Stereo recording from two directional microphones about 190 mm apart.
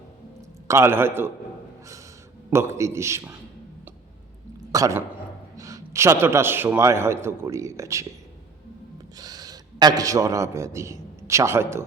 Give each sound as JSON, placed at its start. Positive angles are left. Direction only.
{"t": 0.7, "sound": "a man's voice", "side_deg": -15}
{"t": 2.5, "sound": "a man's voice", "side_deg": -15}
{"t": 4.7, "sound": "a man's voice", "side_deg": -15}
{"t": 9.1, "sound": "a man's voice", "side_deg": -20}